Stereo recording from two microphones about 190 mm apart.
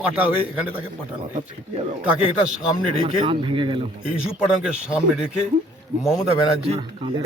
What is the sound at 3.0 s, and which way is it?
Speech, 30° right (ahead or behind).